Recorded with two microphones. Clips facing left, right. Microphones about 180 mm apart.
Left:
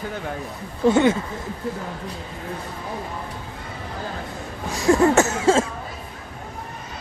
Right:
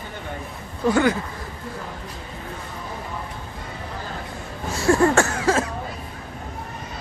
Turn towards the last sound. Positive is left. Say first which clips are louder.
# left 3 dB
turn(degrees=25)  # may be behind; listen again after turning